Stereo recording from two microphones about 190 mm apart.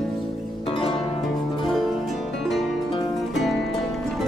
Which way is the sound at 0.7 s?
30° left (ahead or behind).